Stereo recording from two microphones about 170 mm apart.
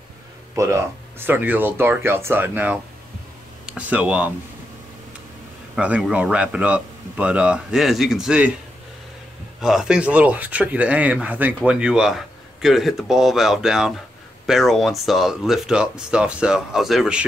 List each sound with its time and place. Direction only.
0.6 s a man's voice: 15° right (ahead or behind)
5.8 s a man's voice: 5° right (ahead or behind)
9.6 s a man's voice: centre (ahead or behind)